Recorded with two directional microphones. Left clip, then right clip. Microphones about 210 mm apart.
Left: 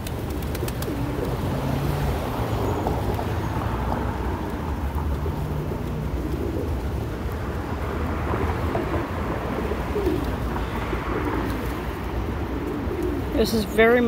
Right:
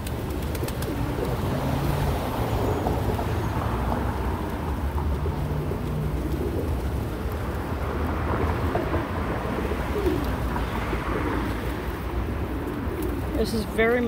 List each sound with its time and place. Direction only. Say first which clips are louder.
13.4 s speech: left 5 dB; 20° left (ahead or behind)